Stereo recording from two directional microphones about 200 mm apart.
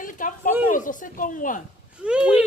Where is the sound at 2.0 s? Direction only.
5° right (ahead or behind).